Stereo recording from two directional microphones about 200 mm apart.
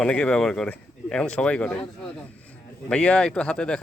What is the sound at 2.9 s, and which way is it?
Speech, 5° left (ahead or behind).